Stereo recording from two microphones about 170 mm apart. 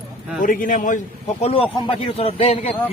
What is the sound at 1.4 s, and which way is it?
A man's voice, 30° left (ahead or behind).